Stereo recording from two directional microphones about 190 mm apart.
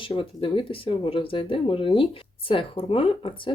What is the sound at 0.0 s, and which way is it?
Speech, 25° left (ahead or behind).